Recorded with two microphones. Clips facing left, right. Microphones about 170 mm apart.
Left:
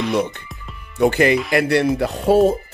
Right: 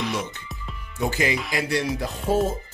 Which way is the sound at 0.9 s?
65° left (ahead or behind).